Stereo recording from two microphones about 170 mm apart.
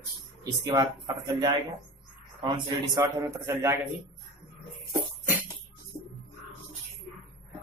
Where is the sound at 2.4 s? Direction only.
25° right (ahead or behind).